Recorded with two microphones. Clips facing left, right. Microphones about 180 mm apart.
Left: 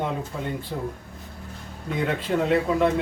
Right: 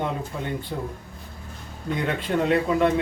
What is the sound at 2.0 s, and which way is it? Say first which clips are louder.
Speech: even; centre (ahead or behind).